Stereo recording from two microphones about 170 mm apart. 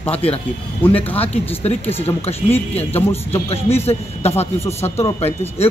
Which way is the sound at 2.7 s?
40° left (ahead or behind).